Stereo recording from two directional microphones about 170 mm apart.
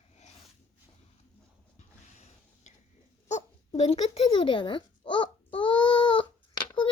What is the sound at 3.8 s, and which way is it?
A child's voice, 40° left (ahead or behind).